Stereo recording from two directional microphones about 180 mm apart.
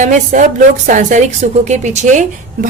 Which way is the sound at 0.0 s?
40° right (ahead or behind).